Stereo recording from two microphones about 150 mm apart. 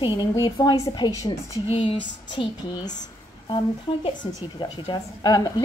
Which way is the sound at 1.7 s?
35° left (ahead or behind).